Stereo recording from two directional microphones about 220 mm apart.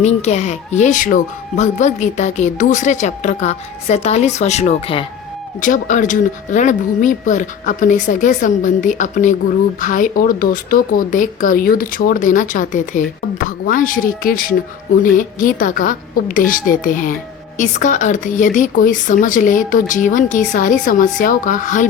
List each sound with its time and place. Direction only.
0.0 s speech: 30° left (ahead or behind)